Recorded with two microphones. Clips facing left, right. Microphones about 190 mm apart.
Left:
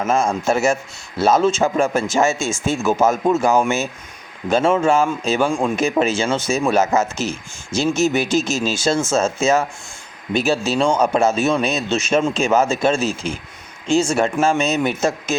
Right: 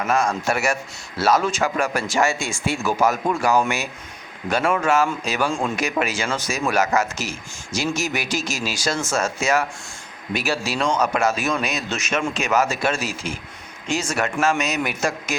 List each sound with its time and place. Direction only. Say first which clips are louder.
0.0 s speech: left 3 dB; 25° left (ahead or behind)